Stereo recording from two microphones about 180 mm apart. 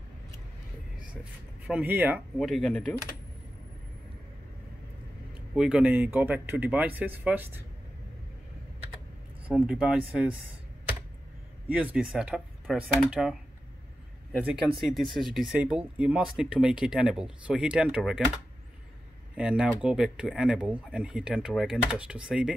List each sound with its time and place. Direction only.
1.7 s speech: 10° right (ahead or behind)
2.3 s speech: centre (ahead or behind)
5.5 s speech: 5° right (ahead or behind)
9.5 s speech: 5° right (ahead or behind)
11.9 s speech: 5° right (ahead or behind)
19.3 s speech: 5° right (ahead or behind)